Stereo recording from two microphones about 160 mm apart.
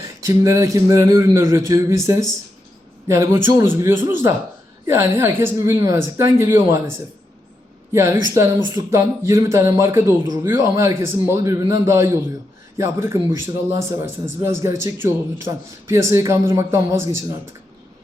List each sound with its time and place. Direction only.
0.0 s speech: 20° right (ahead or behind)
7.9 s speech: 15° right (ahead or behind)